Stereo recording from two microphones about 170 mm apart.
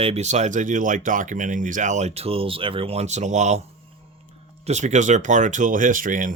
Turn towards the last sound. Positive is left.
turn(degrees=-50)  # may be behind; listen again after turning